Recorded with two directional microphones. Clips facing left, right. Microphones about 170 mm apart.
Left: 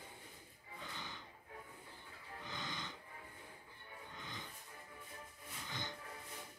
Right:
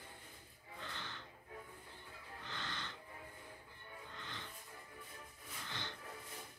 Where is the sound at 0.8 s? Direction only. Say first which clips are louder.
Even; 10° left (ahead or behind).